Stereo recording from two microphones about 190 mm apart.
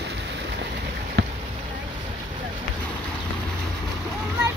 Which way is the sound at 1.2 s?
65° right (ahead or behind).